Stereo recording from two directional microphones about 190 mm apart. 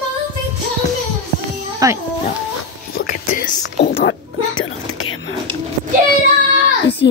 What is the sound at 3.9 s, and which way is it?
Speech, 80° left.